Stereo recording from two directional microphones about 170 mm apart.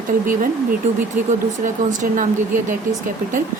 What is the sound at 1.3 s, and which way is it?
Speech, 50° right (ahead or behind).